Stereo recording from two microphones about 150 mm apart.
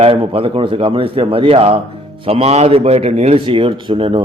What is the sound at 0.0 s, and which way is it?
A man's voice, 40° right (ahead or behind).